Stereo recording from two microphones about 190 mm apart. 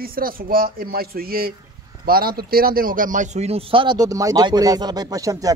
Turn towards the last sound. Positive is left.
turn(degrees=-15)  # may be behind; listen again after turning